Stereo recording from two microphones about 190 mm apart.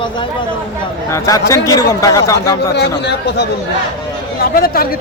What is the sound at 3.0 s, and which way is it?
Speech, 60° left (ahead or behind).